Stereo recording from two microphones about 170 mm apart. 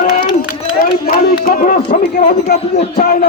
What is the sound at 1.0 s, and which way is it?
Speech, 60° left (ahead or behind).